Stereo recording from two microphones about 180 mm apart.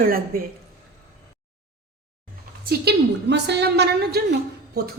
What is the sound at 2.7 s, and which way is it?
A woman's voice, 70° right (ahead or behind).